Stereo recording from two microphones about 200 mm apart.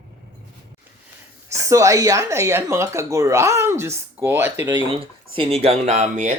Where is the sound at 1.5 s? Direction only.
15° right (ahead or behind).